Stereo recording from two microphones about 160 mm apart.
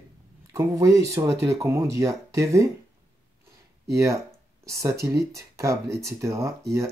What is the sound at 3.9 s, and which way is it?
Speech, 20° right (ahead or behind).